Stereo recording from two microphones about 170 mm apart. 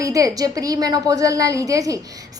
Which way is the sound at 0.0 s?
20° right (ahead or behind).